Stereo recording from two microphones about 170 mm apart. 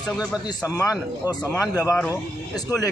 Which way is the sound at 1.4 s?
15° left (ahead or behind).